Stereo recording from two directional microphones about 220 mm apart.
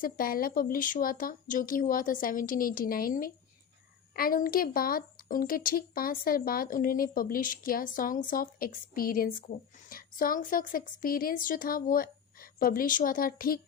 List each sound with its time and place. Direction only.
0.0 s a woman's voice: 40° left (ahead or behind)